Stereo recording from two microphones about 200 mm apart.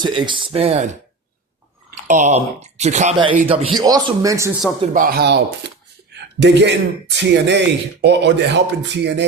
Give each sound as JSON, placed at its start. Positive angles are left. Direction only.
{"t": 0.0, "sound": "speech", "side_deg": -25}
{"t": 2.0, "sound": "speech", "side_deg": -40}
{"t": 3.8, "sound": "speech", "side_deg": -20}
{"t": 4.8, "sound": "speech", "side_deg": -45}
{"t": 6.4, "sound": "speech", "side_deg": -60}